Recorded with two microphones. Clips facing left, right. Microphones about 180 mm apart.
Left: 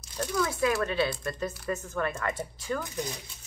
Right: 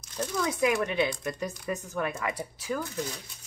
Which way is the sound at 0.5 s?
15° right (ahead or behind).